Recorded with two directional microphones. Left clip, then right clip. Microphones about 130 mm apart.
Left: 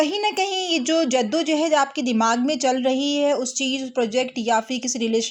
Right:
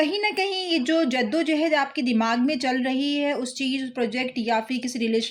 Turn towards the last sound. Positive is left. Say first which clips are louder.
# left 2 dB
turn(degrees=35)  # may be behind; listen again after turning